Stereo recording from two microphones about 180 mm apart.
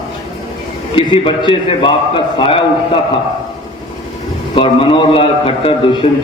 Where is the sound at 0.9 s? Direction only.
30° left (ahead or behind).